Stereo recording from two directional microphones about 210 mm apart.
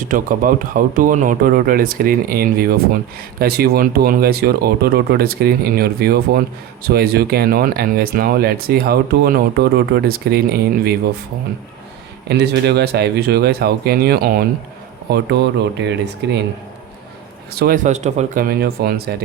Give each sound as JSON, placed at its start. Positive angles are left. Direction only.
{"t": 0.0, "sound": "speech", "side_deg": -40}
{"t": 12.3, "sound": "speech", "side_deg": -50}
{"t": 17.5, "sound": "speech", "side_deg": -50}
{"t": 17.8, "sound": "speech", "side_deg": -35}